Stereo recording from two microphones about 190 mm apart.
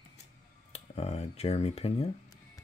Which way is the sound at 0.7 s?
35° left (ahead or behind).